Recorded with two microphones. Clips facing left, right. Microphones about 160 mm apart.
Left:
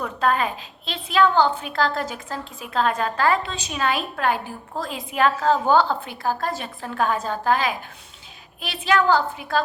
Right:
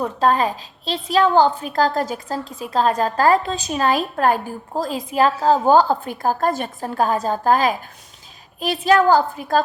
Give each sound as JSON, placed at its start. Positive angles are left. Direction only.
{"t": 0.0, "sound": "a woman's voice", "side_deg": -35}